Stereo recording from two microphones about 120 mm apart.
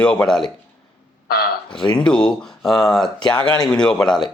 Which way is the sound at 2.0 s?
10° left (ahead or behind).